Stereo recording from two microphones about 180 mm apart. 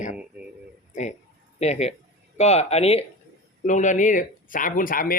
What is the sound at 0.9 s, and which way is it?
Speech, 40° left (ahead or behind).